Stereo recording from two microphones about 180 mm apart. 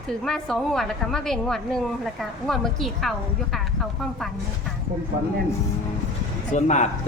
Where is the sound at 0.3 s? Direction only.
Centre (ahead or behind).